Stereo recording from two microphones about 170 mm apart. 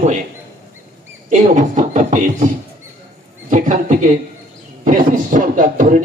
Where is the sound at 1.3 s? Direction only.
45° right (ahead or behind).